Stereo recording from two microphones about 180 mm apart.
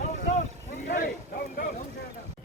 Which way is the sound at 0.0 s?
45° left (ahead or behind).